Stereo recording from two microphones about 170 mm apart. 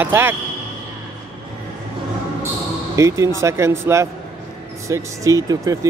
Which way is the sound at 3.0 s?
15° right (ahead or behind).